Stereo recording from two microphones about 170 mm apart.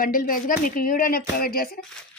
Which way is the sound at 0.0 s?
55° left (ahead or behind).